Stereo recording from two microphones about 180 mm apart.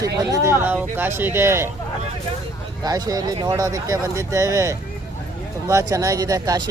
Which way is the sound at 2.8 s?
20° right (ahead or behind).